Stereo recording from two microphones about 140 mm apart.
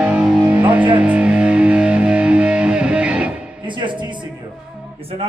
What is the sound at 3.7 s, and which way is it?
Music, 35° right (ahead or behind).